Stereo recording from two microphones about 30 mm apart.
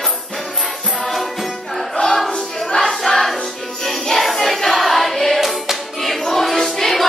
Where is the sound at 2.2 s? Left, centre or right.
Left.